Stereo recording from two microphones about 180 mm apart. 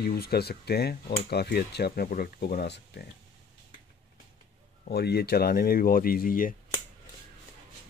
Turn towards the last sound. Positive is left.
turn(degrees=50)  # may be behind; listen again after turning